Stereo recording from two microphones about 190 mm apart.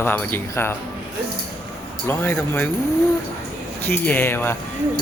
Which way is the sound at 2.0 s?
10° left (ahead or behind).